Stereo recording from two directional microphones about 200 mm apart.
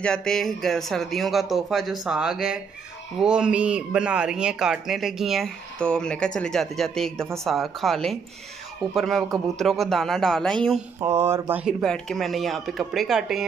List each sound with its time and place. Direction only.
0.0 s speech: 5° left (ahead or behind)
11.0 s speech: 15° right (ahead or behind)
11.8 s speech: centre (ahead or behind)